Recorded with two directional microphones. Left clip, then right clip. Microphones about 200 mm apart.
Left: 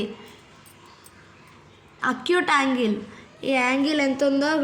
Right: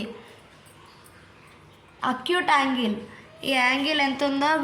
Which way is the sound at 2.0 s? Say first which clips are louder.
Left 2 dB; 10° left (ahead or behind).